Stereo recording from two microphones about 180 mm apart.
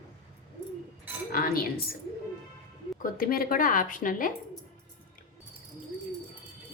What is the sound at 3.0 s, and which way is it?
A woman's voice, 55° left (ahead or behind).